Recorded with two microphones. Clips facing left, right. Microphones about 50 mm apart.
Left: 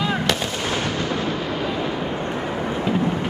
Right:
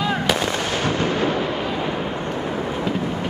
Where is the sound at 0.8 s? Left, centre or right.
Right.